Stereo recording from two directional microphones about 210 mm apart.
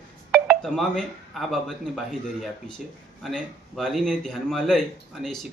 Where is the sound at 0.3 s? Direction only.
5° right (ahead or behind).